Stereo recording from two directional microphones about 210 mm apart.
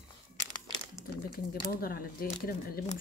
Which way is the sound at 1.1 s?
50° left (ahead or behind).